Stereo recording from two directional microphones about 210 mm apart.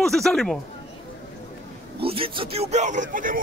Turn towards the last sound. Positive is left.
turn(degrees=-40)  # may be behind; listen again after turning